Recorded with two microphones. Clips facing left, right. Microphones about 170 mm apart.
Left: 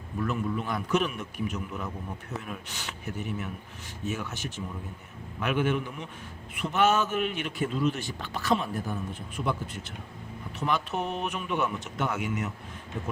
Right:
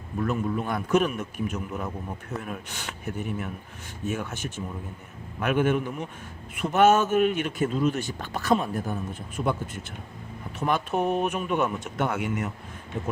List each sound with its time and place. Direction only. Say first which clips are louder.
0.2 s a man's voice: right 3 dB; 40° right (ahead or behind)